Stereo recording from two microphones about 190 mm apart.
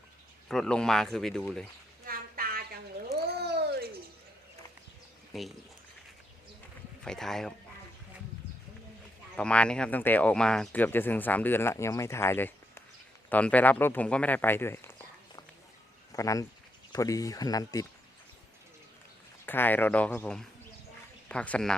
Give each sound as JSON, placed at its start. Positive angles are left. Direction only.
{"t": 0.4, "sound": "speech", "side_deg": 0}
{"t": 2.0, "sound": "a sound", "side_deg": -50}
{"t": 3.1, "sound": "cat", "side_deg": -60}
{"t": 5.3, "sound": "speech", "side_deg": 0}
{"t": 7.0, "sound": "speech", "side_deg": 5}
{"t": 9.3, "sound": "speech", "side_deg": 5}
{"t": 19.5, "sound": "speech", "side_deg": 10}